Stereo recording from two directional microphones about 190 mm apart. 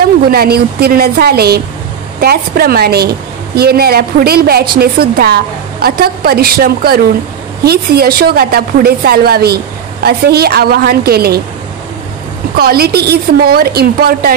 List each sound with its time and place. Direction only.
0.0 s a woman's voice: 50° right (ahead or behind)
12.5 s a woman's voice: 55° right (ahead or behind)